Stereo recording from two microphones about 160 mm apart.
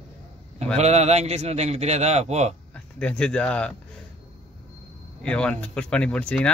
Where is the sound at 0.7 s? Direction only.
45° right (ahead or behind).